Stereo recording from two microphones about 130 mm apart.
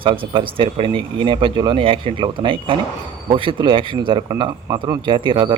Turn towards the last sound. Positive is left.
turn(degrees=-40)  # may be behind; listen again after turning